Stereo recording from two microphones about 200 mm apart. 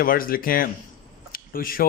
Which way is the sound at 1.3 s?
45° left (ahead or behind).